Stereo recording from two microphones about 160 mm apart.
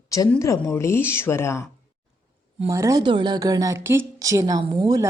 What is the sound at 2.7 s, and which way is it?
Speech, 20° right (ahead or behind).